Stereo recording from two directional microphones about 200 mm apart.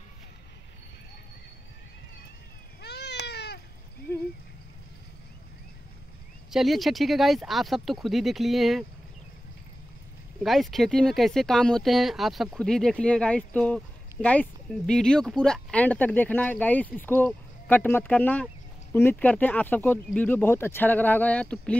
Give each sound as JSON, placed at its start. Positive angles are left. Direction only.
{"t": 2.8, "sound": "cat", "side_deg": 55}
{"t": 6.5, "sound": "speech", "side_deg": 0}
{"t": 10.4, "sound": "speech", "side_deg": 0}